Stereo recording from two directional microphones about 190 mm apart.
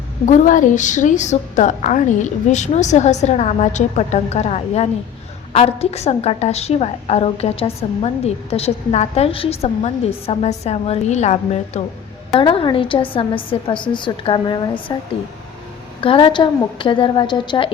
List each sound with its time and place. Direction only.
0.3 s a woman's voice: 45° left (ahead or behind); by 14.9 s 25° left (ahead or behind)
16.0 s a woman's voice: 25° left (ahead or behind)